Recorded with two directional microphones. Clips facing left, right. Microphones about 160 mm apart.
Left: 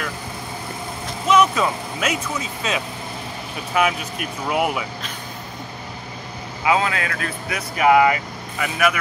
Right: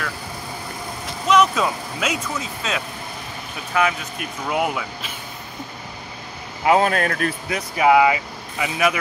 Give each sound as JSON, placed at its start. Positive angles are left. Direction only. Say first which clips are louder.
{"t": 1.3, "sound": "speech", "louder": "even", "side_deg": 5}
{"t": 6.6, "sound": "speech", "louder": "right 3 dB", "side_deg": -50}
{"t": 7.8, "sound": "speech", "louder": "even", "side_deg": -10}